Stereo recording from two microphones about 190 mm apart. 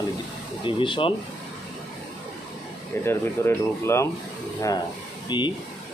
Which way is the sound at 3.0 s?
15° left (ahead or behind).